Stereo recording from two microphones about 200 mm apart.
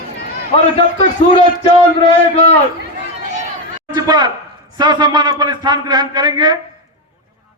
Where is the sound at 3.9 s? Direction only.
20° right (ahead or behind).